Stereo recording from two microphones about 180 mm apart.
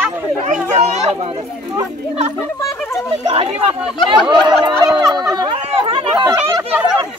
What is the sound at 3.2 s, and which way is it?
Speech, 35° right (ahead or behind).